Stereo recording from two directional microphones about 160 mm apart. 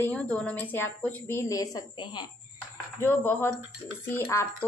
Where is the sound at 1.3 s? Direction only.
20° left (ahead or behind).